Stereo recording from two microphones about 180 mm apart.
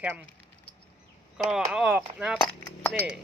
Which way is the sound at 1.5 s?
5° right (ahead or behind).